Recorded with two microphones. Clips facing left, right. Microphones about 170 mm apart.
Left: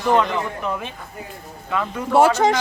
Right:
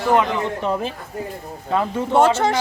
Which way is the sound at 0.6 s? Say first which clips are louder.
Right 4 dB; 30° right (ahead or behind).